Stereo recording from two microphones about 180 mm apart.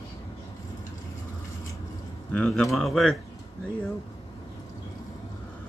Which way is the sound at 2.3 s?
5° left (ahead or behind).